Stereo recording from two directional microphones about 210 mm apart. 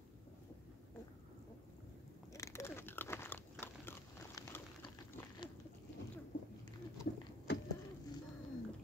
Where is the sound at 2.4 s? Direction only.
15° left (ahead or behind).